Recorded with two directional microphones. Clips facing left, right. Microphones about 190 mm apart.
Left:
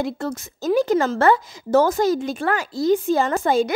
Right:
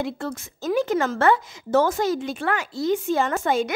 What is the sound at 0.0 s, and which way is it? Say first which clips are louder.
A woman's voice: left 3 dB; 40° left (ahead or behind).